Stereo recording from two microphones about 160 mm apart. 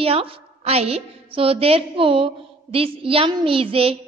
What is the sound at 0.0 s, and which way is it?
A woman's voice, 35° right (ahead or behind).